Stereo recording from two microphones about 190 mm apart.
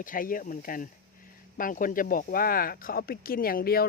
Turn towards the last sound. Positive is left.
turn(degrees=50)  # may be behind; listen again after turning